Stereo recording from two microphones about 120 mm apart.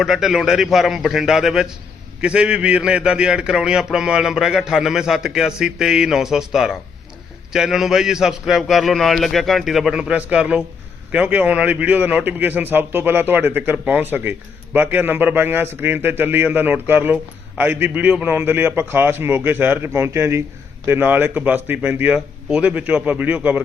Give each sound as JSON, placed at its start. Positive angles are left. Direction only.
{"t": 0.0, "sound": "a man's voice", "side_deg": -5}